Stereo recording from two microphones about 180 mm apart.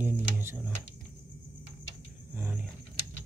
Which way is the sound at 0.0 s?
15° right (ahead or behind).